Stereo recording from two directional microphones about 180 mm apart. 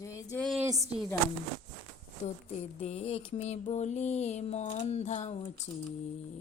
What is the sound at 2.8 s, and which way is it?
Mantra, 35° left (ahead or behind).